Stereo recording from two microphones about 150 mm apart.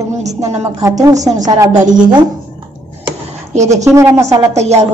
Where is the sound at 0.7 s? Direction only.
25° right (ahead or behind).